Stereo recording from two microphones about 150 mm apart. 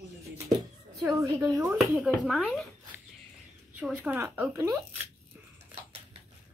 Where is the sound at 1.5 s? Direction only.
20° right (ahead or behind).